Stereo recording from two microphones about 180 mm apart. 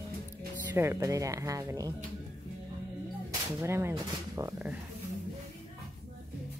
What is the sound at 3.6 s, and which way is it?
Speech, 15° right (ahead or behind).